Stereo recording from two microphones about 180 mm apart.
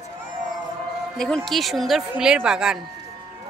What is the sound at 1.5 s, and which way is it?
A woman's voice, centre (ahead or behind).